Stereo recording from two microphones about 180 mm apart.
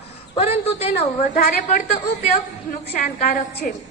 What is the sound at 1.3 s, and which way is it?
Speech, 50° left (ahead or behind).